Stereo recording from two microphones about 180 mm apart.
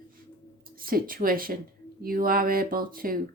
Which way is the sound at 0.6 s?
55° right (ahead or behind).